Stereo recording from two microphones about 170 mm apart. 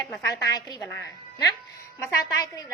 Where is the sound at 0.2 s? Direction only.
20° left (ahead or behind).